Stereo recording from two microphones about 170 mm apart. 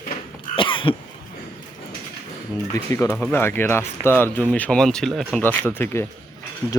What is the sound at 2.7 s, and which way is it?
Speech, 15° left (ahead or behind).